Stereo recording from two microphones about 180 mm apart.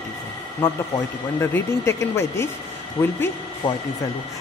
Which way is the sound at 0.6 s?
10° left (ahead or behind).